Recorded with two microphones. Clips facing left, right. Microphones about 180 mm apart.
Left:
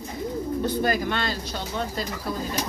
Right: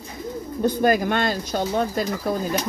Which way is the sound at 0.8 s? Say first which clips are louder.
Right 5 dB; 50° right (ahead or behind).